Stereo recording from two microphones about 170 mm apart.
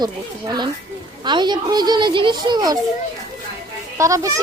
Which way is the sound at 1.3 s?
25° right (ahead or behind).